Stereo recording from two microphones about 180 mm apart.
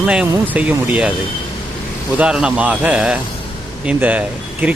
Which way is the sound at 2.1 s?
5° right (ahead or behind).